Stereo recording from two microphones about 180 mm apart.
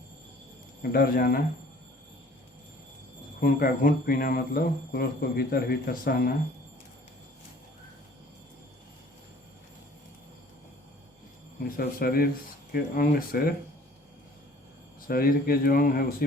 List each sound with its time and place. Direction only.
0.8 s speech: 55° left (ahead or behind)
3.4 s speech: 55° left (ahead or behind)
11.8 s speech: 55° left (ahead or behind)
15.0 s speech: 55° left (ahead or behind)